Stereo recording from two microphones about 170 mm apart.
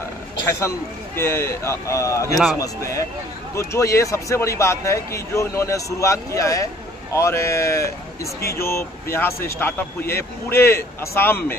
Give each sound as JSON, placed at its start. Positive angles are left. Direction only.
{"t": 0.5, "sound": "a man's voice", "side_deg": 15}